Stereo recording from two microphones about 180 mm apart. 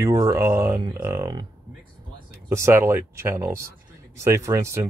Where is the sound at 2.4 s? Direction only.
15° right (ahead or behind).